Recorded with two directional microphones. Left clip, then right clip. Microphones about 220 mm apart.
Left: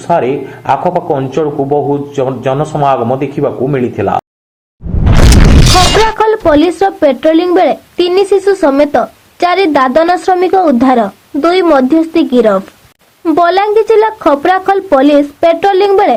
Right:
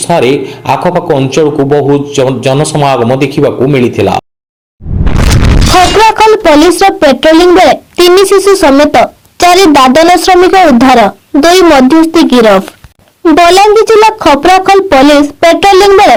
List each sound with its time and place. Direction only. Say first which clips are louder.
0.1 s a man's voice: right 3 dB; 50° right (ahead or behind)
5.3 s boom: right 3 dB; centre (ahead or behind)
6.1 s a sound: right 5 dB; 25° right (ahead or behind)
7.0 s speech: right 4 dB; 25° right (ahead or behind)